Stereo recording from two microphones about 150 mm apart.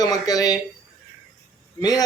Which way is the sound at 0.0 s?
25° left (ahead or behind).